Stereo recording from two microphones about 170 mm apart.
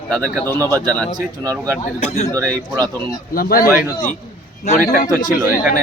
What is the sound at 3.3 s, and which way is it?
Speech, 60° left (ahead or behind).